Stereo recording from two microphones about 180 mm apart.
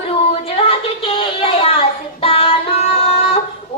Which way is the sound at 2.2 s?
35° left (ahead or behind).